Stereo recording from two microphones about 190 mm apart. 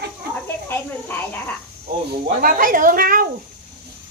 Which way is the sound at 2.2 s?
45° right (ahead or behind).